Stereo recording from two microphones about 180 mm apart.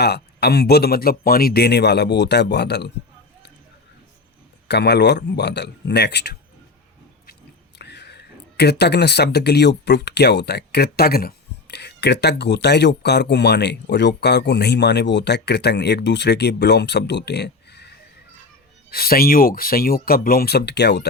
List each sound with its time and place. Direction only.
0.0 s speech: 65° left (ahead or behind)
4.7 s speech: 70° left (ahead or behind)
7.8 s speech: 70° left (ahead or behind)
18.9 s speech: 55° left (ahead or behind)